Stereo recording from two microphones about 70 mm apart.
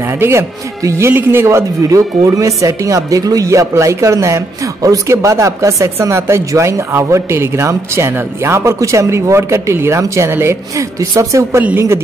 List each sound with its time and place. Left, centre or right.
0.2 s speech: right